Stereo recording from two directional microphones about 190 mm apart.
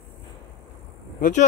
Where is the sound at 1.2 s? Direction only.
45° left (ahead or behind).